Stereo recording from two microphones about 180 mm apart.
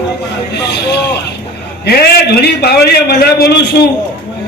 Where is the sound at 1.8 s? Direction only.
60° left (ahead or behind).